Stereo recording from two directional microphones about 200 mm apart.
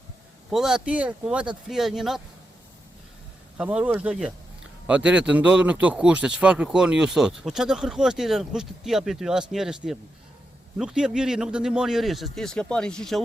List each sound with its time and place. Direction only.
0.5 s a man's voice: 5° right (ahead or behind)
3.6 s a man's voice: 5° right (ahead or behind)